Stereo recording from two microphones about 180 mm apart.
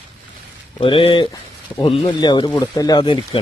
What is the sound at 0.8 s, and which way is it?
Speech, 30° left (ahead or behind).